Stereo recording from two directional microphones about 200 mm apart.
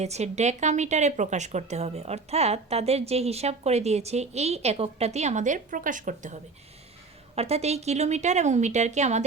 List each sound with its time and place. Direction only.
0.0 s a woman's voice: 35° right (ahead or behind)